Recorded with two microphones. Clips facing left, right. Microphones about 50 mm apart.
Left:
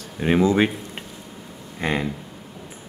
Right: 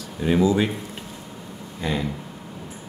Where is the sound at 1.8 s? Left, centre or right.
Left.